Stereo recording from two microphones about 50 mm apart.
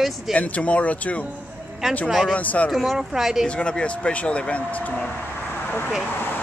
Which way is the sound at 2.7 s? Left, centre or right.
Centre.